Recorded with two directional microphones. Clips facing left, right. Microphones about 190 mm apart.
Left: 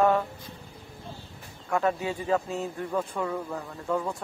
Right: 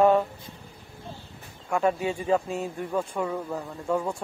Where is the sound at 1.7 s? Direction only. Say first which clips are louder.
Right 2 dB; 15° right (ahead or behind).